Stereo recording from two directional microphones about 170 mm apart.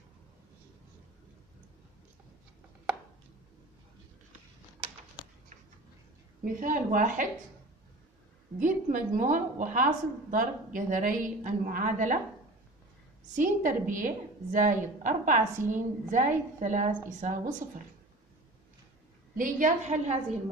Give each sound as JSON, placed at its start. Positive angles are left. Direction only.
{"t": 6.4, "sound": "a woman's voice", "side_deg": -50}
{"t": 8.5, "sound": "a woman's voice", "side_deg": -50}
{"t": 13.3, "sound": "a woman's voice", "side_deg": -50}
{"t": 19.3, "sound": "a woman's voice", "side_deg": -50}